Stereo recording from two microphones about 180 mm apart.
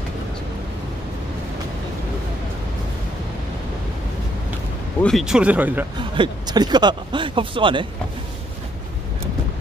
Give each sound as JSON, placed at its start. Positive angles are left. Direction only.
{"t": 5.0, "sound": "speech", "side_deg": 0}
{"t": 5.9, "sound": "speech", "side_deg": -25}